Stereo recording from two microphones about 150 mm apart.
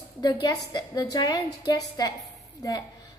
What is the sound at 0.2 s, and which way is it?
A woman's voice, 25° left (ahead or behind).